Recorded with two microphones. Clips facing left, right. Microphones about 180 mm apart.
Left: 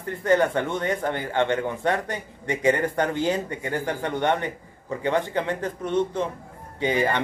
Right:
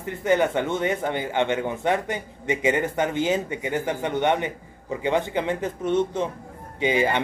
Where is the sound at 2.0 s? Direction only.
20° right (ahead or behind).